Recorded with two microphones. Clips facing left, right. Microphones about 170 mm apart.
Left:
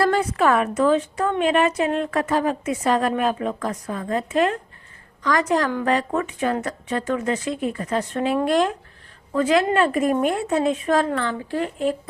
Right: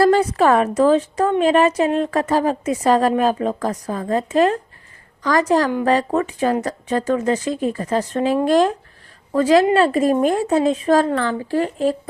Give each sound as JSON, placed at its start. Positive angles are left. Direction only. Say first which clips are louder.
{"t": 0.0, "sound": "a woman's voice", "louder": "right 5 dB", "side_deg": -35}